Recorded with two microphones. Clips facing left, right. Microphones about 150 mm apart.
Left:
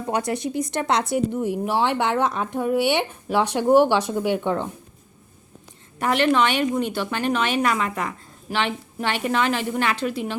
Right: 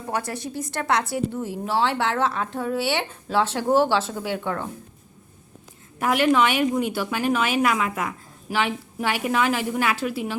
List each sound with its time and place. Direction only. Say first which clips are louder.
0.1 s a woman's voice: left 4 dB; 20° left (ahead or behind)
6.0 s a woman's voice: even; 5° right (ahead or behind)